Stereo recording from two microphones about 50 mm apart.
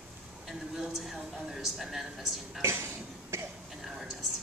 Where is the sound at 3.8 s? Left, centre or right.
Centre.